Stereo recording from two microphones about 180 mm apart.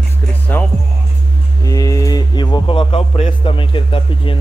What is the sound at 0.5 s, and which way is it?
Speech, 10° left (ahead or behind).